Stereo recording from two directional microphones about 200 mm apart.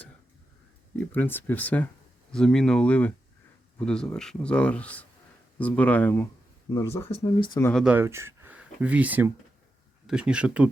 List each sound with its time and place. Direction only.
0.9 s a man's voice: 10° left (ahead or behind)
7.1 s speech: 25° left (ahead or behind)
7.6 s a man's voice: 5° left (ahead or behind)
7.9 s a man's voice: 15° right (ahead or behind)